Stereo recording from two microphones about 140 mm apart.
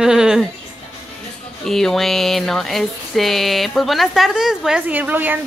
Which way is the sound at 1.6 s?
Centre (ahead or behind).